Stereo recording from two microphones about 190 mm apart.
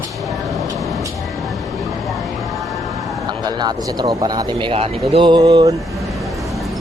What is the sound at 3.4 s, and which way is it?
Speech, 20° right (ahead or behind).